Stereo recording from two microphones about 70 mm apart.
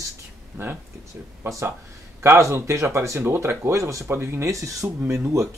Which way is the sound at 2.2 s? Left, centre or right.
Right.